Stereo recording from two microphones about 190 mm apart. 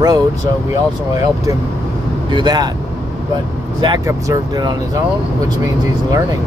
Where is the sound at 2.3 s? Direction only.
20° right (ahead or behind).